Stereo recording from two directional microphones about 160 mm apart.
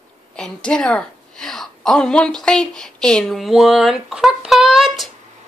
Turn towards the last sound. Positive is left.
turn(degrees=0)  # may be behind; listen again after turning